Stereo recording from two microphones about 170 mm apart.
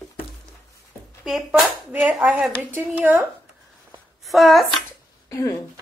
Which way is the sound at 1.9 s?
5° right (ahead or behind).